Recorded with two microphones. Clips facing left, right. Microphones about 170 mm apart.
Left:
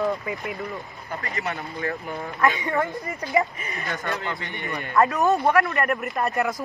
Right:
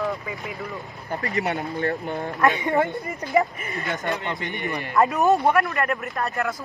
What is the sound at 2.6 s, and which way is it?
Speech, 20° right (ahead or behind).